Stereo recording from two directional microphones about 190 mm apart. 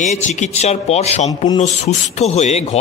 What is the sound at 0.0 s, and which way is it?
A man's voice, 40° left (ahead or behind).